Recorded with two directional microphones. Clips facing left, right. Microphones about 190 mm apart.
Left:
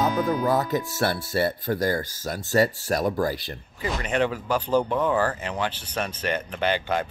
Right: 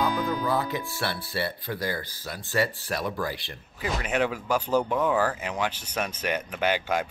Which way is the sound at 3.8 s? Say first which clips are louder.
Left 2 dB; 5° right (ahead or behind).